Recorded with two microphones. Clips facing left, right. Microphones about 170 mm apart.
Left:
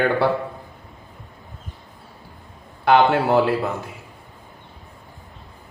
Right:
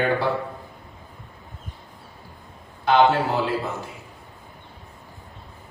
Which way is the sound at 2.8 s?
60° left (ahead or behind).